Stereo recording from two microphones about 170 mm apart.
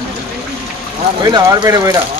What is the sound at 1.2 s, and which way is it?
Speech, 20° right (ahead or behind).